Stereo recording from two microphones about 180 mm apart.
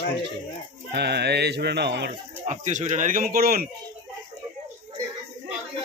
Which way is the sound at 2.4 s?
40° right (ahead or behind).